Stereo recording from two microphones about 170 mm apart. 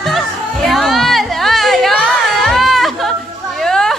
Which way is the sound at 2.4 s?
Centre (ahead or behind).